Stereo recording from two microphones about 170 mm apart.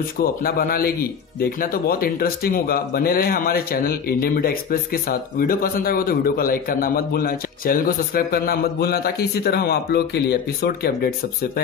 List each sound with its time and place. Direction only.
0.2 s speech: 60° left (ahead or behind)